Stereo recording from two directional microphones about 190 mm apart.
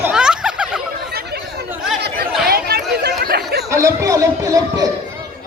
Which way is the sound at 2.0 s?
60° right (ahead or behind).